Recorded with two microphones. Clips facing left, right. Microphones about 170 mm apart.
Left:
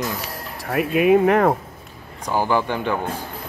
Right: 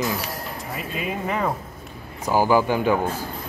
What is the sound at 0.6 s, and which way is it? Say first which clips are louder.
Speech: left 14 dB; 65° left (ahead or behind).